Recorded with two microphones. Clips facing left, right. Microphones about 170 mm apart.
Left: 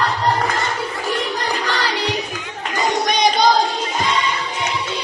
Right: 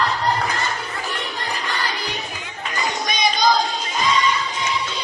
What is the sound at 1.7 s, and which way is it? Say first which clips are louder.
Music: left 5 dB; 90° left.